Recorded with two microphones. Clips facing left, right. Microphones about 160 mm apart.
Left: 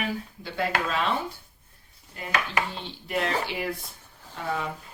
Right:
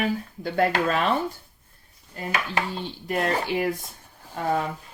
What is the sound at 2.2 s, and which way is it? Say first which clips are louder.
Dishes: right 5 dB; 40° right (ahead or behind).